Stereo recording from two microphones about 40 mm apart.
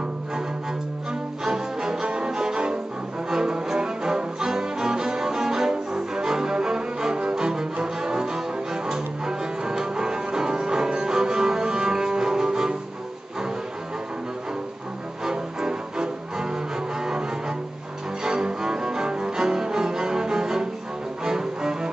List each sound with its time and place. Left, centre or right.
1.4 s cello: centre
3.3 s music: centre
7.8 s cello: centre
15.2 s music: centre
18.2 s cello: centre